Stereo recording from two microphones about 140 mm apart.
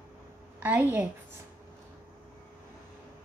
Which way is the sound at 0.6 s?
15° right (ahead or behind).